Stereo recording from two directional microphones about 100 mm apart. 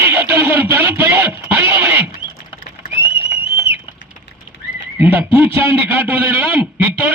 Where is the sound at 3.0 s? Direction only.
25° right (ahead or behind).